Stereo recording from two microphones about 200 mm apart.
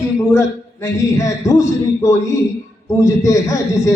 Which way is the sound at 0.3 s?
15° left (ahead or behind).